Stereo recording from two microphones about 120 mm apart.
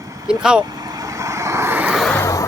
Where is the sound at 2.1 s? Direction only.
25° left (ahead or behind).